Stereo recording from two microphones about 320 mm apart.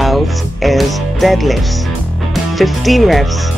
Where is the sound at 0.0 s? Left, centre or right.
Centre.